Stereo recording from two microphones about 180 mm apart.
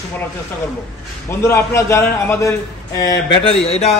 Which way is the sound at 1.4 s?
15° left (ahead or behind).